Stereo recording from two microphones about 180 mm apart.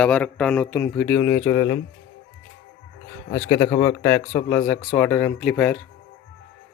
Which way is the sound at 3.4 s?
25° left (ahead or behind).